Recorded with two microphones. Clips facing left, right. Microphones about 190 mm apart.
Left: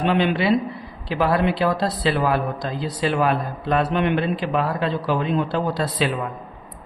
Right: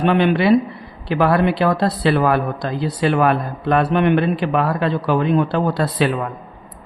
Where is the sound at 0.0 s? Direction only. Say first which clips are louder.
Right 4 dB; 55° right (ahead or behind).